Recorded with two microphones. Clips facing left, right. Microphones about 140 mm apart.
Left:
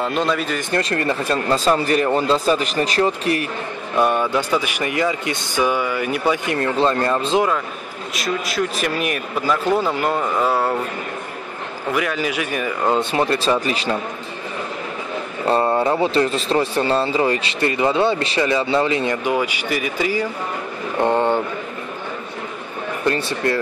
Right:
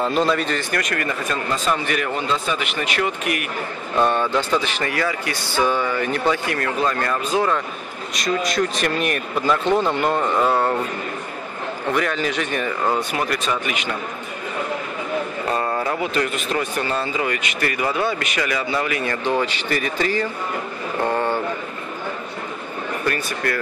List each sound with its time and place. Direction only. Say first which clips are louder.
0.0 s speech: right 1 dB; centre (ahead or behind)
0.6 s speech: left 3 dB; 25° left (ahead or behind)
3.9 s speech: left 1 dB; 10° left (ahead or behind); by 7.4 s 25° left (ahead or behind)
8.1 s speech: right 2 dB; 5° left (ahead or behind)
11.9 s speech: left 1 dB; 5° left (ahead or behind)
12.9 s a man's voice: left 4 dB; 25° left (ahead or behind)
15.4 s a man's voice: left 8 dB; 30° left (ahead or behind)
19.2 s speech: left 1 dB; 10° left (ahead or behind)
21.0 s a man's voice: left 4 dB; 20° left (ahead or behind)
23.0 s a man's voice: left 5 dB; 25° left (ahead or behind)